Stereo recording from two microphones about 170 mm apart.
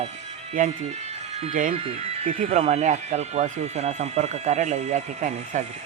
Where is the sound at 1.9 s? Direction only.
35° right (ahead or behind).